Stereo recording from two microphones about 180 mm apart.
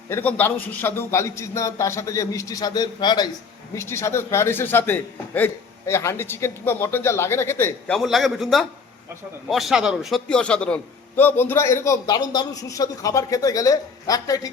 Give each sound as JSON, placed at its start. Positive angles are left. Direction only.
{"t": 0.1, "sound": "a man's voice", "side_deg": 10}
{"t": 7.9, "sound": "a man's voice", "side_deg": 0}